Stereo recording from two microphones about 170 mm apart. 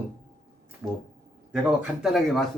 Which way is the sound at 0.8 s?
15° right (ahead or behind).